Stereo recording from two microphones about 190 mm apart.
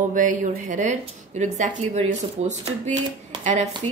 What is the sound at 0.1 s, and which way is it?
A woman's voice, 40° right (ahead or behind).